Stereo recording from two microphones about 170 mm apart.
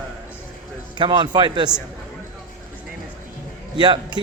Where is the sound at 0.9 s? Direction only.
30° right (ahead or behind).